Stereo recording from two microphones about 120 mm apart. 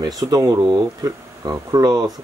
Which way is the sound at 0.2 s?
30° right (ahead or behind).